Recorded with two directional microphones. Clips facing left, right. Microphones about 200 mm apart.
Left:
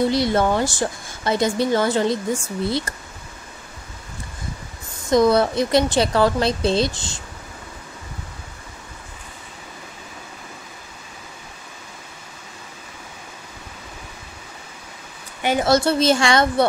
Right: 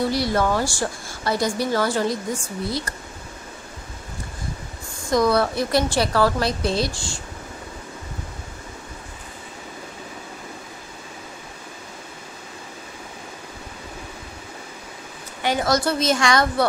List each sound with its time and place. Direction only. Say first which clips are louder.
0.0 s speech: left 3 dB; 20° left (ahead or behind)
5.1 s speech: left 3 dB; 20° left (ahead or behind)
15.6 s speech: left 5 dB; 30° left (ahead or behind)